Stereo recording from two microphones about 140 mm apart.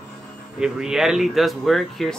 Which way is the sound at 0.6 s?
5° right (ahead or behind).